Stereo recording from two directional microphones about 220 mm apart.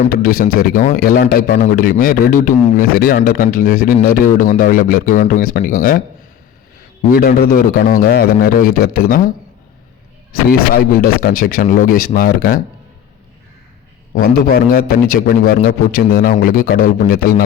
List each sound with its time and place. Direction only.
0.1 s a man's voice: 40° left (ahead or behind)
7.1 s a man's voice: 40° left (ahead or behind)
10.8 s a man's voice: 40° left (ahead or behind)
14.1 s a man's voice: 45° left (ahead or behind)